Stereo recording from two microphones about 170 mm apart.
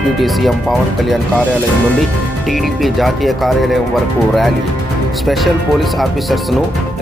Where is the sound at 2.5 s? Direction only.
Centre (ahead or behind).